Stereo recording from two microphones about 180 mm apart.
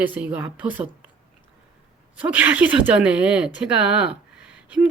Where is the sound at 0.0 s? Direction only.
10° right (ahead or behind).